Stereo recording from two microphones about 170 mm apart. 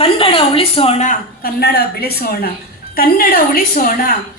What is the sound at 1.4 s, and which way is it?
A woman's voice, 70° left (ahead or behind).